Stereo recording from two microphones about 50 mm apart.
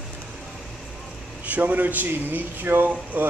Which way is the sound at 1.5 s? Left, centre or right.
Right.